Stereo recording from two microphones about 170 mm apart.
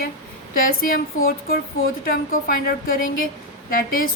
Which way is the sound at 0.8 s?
60° left (ahead or behind).